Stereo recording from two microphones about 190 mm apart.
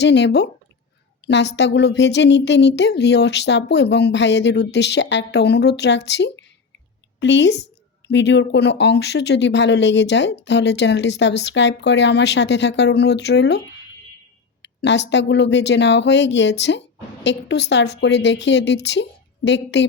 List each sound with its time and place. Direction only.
0.0 s speech: 65° left (ahead or behind)
14.6 s speech: 65° left (ahead or behind)